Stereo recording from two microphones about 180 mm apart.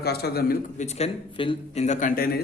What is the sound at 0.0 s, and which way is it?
Speech, 60° left (ahead or behind).